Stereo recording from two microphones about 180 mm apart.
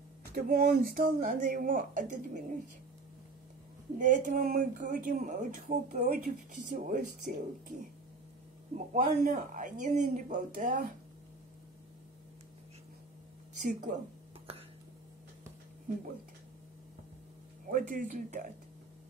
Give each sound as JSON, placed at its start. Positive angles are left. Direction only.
{"t": 0.3, "sound": "speech", "side_deg": -55}
{"t": 4.0, "sound": "speech", "side_deg": -45}
{"t": 8.7, "sound": "speech", "side_deg": -45}
{"t": 13.6, "sound": "a woman's voice", "side_deg": -45}
{"t": 17.6, "sound": "speech", "side_deg": -50}